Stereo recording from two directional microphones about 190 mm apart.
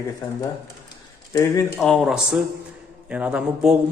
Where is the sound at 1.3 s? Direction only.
15° left (ahead or behind).